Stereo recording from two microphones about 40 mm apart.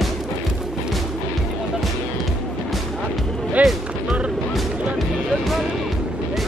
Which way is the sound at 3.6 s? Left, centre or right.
Right.